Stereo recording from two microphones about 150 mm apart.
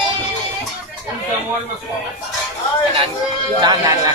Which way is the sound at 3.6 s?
25° right (ahead or behind).